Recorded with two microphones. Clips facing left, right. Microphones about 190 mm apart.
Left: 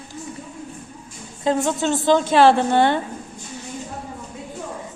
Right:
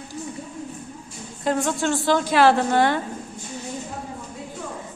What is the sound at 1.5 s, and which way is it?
A woman's voice, 20° left (ahead or behind).